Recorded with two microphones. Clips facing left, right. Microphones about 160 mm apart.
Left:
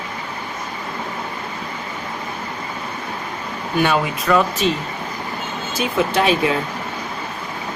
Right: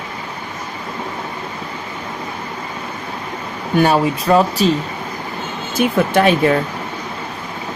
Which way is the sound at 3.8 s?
35° right (ahead or behind).